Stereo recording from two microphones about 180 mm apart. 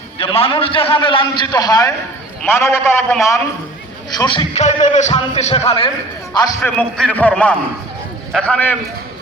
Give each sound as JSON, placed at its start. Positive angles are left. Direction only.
{"t": 0.2, "sound": "a man's voice", "side_deg": 30}
{"t": 4.5, "sound": "music", "side_deg": 40}
{"t": 6.6, "sound": "a man's voice", "side_deg": 5}